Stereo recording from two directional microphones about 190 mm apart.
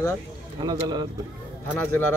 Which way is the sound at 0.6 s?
25° right (ahead or behind).